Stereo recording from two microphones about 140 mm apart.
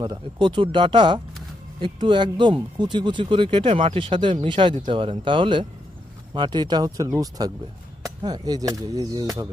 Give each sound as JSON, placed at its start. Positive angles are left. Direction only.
{"t": 0.0, "sound": "speech", "side_deg": -35}